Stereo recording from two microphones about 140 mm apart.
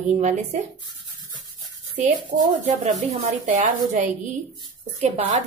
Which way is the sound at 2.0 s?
60° right (ahead or behind).